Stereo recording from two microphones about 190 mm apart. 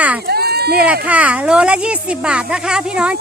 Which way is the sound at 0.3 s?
55° right (ahead or behind).